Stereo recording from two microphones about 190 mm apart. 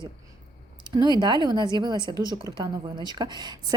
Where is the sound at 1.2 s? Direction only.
25° right (ahead or behind).